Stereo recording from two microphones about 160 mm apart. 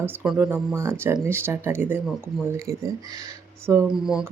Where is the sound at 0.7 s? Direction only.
15° right (ahead or behind).